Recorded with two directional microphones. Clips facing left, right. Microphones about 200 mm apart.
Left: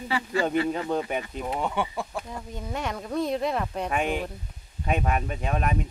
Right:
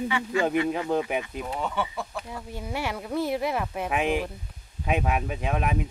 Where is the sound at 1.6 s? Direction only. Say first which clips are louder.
Left 1 dB; 10° left (ahead or behind).